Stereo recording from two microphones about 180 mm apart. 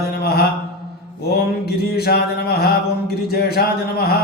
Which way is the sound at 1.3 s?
60° left (ahead or behind).